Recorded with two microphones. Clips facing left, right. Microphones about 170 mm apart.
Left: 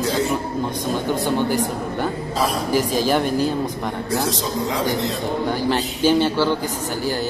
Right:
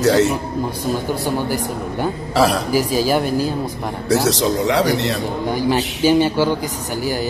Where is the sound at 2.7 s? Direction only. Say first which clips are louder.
Right 2 dB; 10° right (ahead or behind).